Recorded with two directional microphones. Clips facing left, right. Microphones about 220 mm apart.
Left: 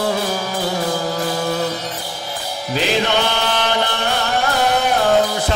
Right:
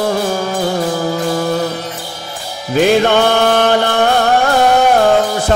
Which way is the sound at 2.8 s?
50° right (ahead or behind).